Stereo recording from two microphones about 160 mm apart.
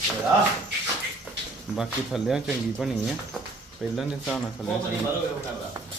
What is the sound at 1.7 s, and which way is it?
Speech, centre (ahead or behind).